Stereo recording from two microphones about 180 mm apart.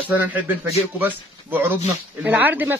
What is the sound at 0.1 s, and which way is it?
Speech, 10° right (ahead or behind).